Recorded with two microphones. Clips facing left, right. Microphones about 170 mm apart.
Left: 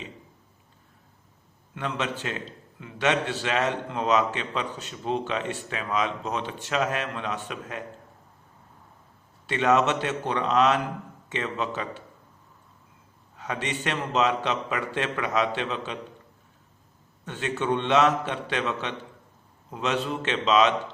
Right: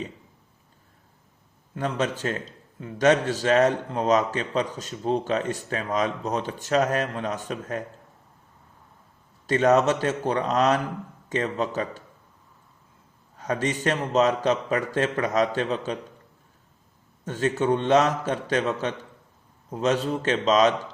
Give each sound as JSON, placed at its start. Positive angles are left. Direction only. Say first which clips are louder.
{"t": 1.7, "sound": "a man's voice", "louder": "right 4 dB", "side_deg": -40}
{"t": 9.5, "sound": "a man's voice", "louder": "right 3 dB", "side_deg": -40}
{"t": 13.3, "sound": "a man's voice", "louder": "right 5 dB", "side_deg": -40}
{"t": 17.2, "sound": "a man's voice", "louder": "right 4 dB", "side_deg": -40}